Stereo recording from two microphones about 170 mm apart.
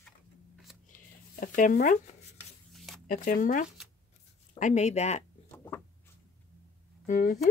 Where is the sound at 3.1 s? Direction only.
50° left (ahead or behind).